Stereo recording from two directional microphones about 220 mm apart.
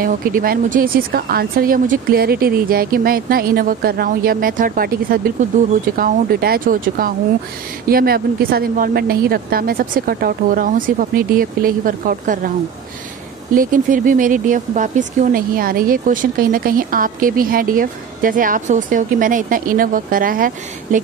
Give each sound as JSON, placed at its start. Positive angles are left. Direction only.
{"t": 0.0, "sound": "speech", "side_deg": -40}
{"t": 13.6, "sound": "speech", "side_deg": -35}